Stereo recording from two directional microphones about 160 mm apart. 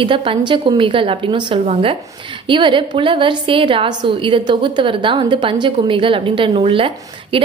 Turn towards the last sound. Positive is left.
turn(degrees=-35)  # may be behind; listen again after turning